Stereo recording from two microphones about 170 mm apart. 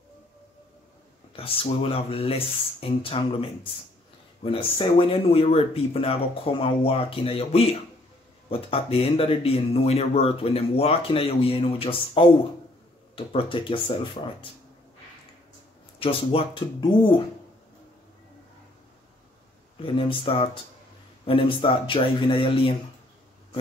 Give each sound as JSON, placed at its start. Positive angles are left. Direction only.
{"t": 1.3, "sound": "speech", "side_deg": 35}
{"t": 16.0, "sound": "speech", "side_deg": 35}
{"t": 20.0, "sound": "speech", "side_deg": 30}